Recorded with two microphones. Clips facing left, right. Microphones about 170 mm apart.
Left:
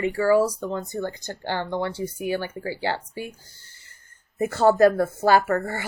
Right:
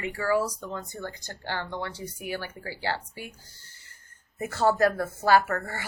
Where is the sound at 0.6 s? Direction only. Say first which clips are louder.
Left 8 dB; 20° left (ahead or behind).